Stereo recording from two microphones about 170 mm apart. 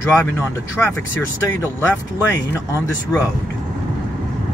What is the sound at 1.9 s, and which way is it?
Speech, 10° left (ahead or behind).